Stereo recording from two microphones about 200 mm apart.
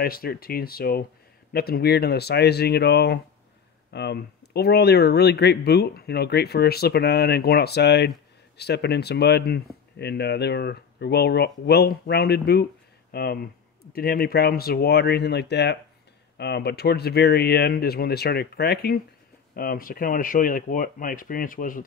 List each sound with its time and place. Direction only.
0.0 s speech: 50° left (ahead or behind)